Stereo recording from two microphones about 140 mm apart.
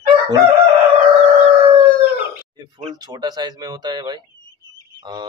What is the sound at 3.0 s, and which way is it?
Speech, 30° right (ahead or behind).